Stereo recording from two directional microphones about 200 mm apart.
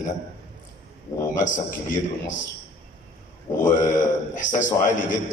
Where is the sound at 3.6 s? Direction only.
40° left (ahead or behind).